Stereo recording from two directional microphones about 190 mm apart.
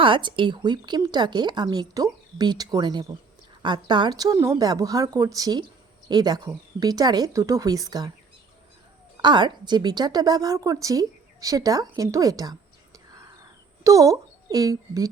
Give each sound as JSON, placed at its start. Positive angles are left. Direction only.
{"t": 0.0, "sound": "a woman's voice", "side_deg": -25}
{"t": 9.2, "sound": "a woman's voice", "side_deg": -25}